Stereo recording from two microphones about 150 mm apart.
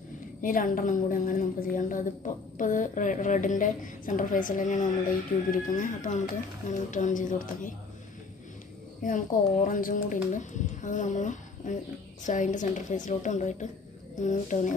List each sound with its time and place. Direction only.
0.4 s speech: 65° left (ahead or behind)
9.0 s speech: 60° left (ahead or behind)